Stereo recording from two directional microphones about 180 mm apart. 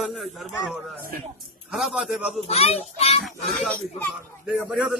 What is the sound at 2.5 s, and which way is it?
Speech, 35° left (ahead or behind).